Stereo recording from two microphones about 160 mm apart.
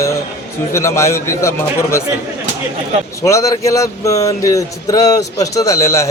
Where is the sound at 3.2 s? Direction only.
20° left (ahead or behind).